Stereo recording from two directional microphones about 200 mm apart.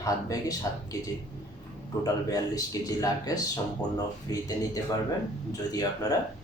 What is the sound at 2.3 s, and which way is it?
Speech, 15° left (ahead or behind).